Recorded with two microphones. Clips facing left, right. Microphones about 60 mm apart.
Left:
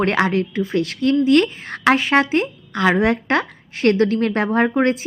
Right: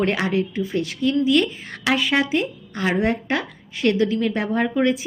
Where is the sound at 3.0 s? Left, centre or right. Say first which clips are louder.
Left 4 dB; left.